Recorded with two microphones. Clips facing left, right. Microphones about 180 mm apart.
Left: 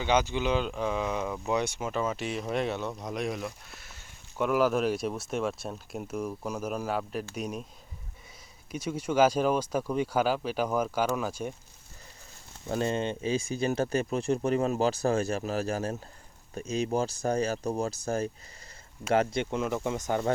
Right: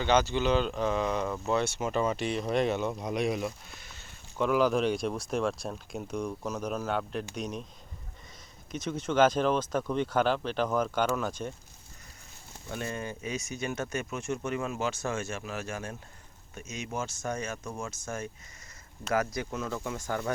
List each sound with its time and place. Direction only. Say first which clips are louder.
0.0 s speech: right 1 dB; 10° left (ahead or behind)
1.9 s speech: right 2 dB; centre (ahead or behind)
8.7 s speech: left 1 dB; 10° left (ahead or behind)
12.6 s speech: left 7 dB; 30° left (ahead or behind)